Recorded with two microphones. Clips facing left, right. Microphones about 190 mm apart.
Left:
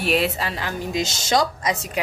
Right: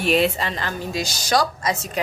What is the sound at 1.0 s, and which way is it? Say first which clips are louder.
Speech: even; 25° left (ahead or behind).